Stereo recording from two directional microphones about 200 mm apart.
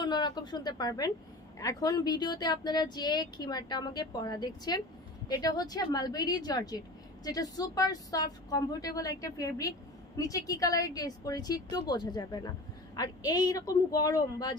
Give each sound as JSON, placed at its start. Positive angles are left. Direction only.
{"t": 0.0, "sound": "a woman's voice", "side_deg": 20}